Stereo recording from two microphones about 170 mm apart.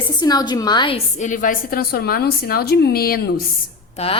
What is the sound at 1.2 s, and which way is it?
A woman's voice, 50° left (ahead or behind).